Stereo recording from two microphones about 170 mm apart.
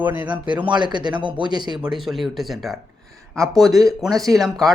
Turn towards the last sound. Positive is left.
turn(degrees=0)  # may be behind; listen again after turning